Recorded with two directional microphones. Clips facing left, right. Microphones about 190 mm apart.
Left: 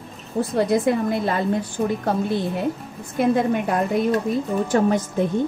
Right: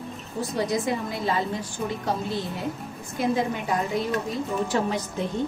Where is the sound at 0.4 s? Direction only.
55° left (ahead or behind).